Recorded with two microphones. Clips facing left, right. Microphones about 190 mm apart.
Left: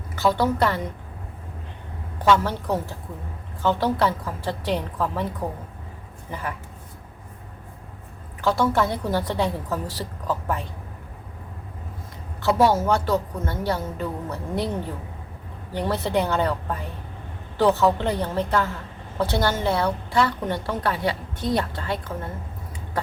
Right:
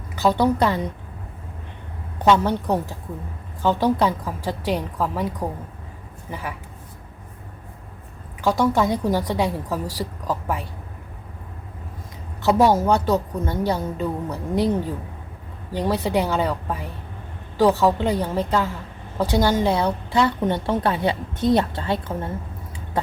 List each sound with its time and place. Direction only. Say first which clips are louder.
0.2 s a woman's voice: right 2 dB; 20° right (ahead or behind)
2.2 s a woman's voice: right 2 dB; 20° right (ahead or behind)
8.4 s a woman's voice: right 2 dB; 15° right (ahead or behind)
12.4 s a woman's voice: right 2 dB; 15° right (ahead or behind)
15.7 s a woman's voice: right 2 dB; 15° right (ahead or behind)